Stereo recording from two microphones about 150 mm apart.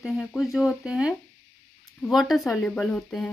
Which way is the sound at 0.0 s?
Centre (ahead or behind).